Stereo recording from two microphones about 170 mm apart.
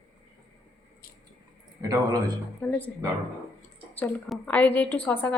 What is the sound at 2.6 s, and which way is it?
Speech, 10° left (ahead or behind).